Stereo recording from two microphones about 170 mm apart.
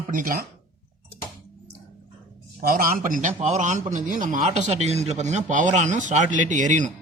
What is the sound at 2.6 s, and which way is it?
A man's voice, 55° right (ahead or behind).